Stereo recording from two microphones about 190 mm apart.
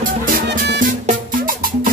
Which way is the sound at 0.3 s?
45° right (ahead or behind).